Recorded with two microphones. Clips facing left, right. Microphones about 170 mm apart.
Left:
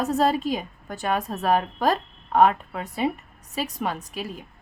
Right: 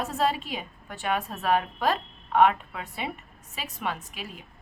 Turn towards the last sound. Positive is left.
turn(degrees=40)  # may be behind; listen again after turning